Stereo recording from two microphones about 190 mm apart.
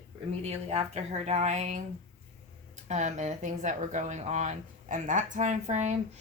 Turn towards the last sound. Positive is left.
turn(degrees=-40)  # may be behind; listen again after turning